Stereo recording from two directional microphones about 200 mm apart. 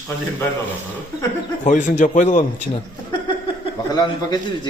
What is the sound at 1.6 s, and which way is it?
Speech, 40° left (ahead or behind).